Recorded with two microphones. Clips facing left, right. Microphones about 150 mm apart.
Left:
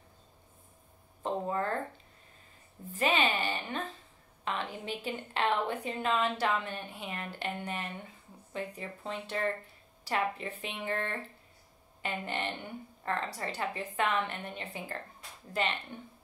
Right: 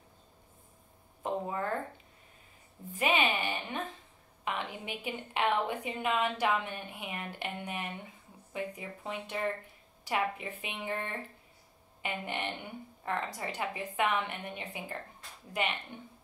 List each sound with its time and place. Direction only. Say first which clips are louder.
1.2 s a woman's voice: left 2 dB; 10° right (ahead or behind)
2.9 s a woman's voice: even; 15° right (ahead or behind)
4.5 s a sound: even; 10° right (ahead or behind)
4.8 s a woman's voice: left 2 dB; 10° right (ahead or behind)